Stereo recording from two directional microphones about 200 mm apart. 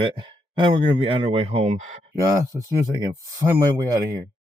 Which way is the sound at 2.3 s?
15° right (ahead or behind).